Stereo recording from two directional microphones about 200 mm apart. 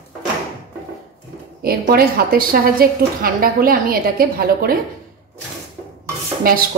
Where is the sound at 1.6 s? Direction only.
50° right (ahead or behind).